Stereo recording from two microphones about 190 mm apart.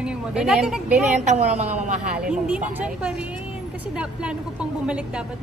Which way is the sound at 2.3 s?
5° right (ahead or behind).